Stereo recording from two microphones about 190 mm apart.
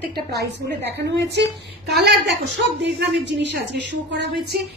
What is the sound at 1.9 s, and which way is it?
A woman's voice, 60° right (ahead or behind).